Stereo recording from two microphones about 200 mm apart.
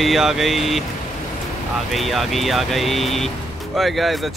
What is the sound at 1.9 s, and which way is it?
Speech, centre (ahead or behind).